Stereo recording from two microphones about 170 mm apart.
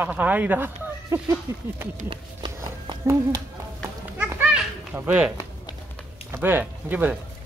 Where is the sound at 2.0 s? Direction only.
30° right (ahead or behind).